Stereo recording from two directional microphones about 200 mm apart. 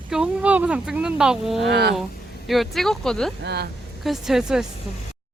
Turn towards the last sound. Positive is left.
turn(degrees=-5)  # may be behind; listen again after turning